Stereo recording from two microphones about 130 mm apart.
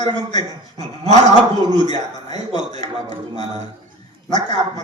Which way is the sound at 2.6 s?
60° right (ahead or behind).